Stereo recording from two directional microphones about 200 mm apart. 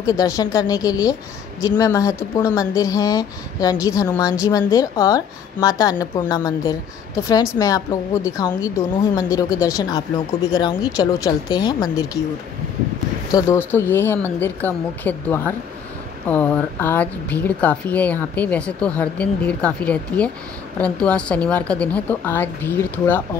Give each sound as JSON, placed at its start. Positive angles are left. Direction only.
{"t": 0.0, "sound": "speech", "side_deg": 20}
{"t": 13.3, "sound": "speech", "side_deg": 15}